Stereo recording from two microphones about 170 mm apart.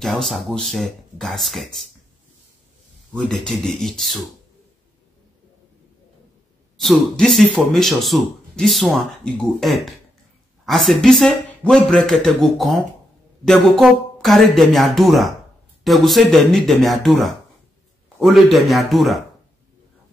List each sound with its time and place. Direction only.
0.0 s speech: centre (ahead or behind)
3.2 s speech: 5° left (ahead or behind)
6.8 s speech: centre (ahead or behind)